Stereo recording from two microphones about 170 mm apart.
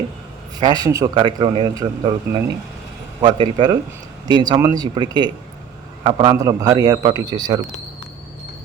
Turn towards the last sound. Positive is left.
turn(degrees=-25)  # may be behind; listen again after turning